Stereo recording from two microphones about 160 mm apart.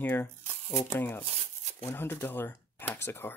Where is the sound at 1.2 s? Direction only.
35° right (ahead or behind).